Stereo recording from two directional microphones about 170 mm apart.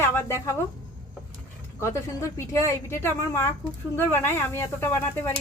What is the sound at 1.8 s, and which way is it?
A woman's voice, 15° left (ahead or behind).